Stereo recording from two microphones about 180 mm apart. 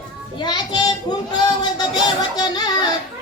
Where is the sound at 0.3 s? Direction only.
25° left (ahead or behind).